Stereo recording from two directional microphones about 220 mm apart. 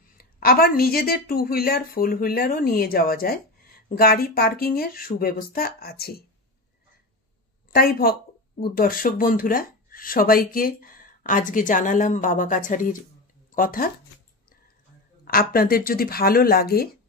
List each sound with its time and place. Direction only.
0.2 s a woman's voice: 45° left (ahead or behind)
7.7 s speech: 40° left (ahead or behind)
15.2 s a woman's voice: 40° left (ahead or behind)